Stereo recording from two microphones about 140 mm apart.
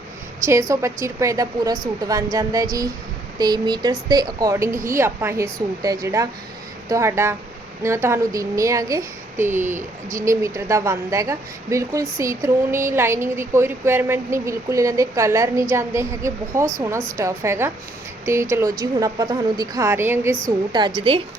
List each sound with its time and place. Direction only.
0.7 s a woman's voice: 20° right (ahead or behind)
20.7 s a woman's voice: 35° right (ahead or behind)